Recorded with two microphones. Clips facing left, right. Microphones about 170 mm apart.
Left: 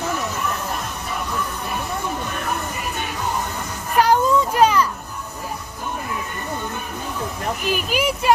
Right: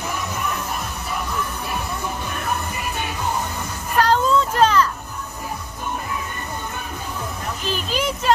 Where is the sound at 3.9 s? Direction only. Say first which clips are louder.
Left 1 dB; 10° left (ahead or behind).